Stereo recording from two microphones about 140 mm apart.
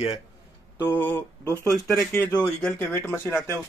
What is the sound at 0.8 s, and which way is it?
Speech, 15° left (ahead or behind).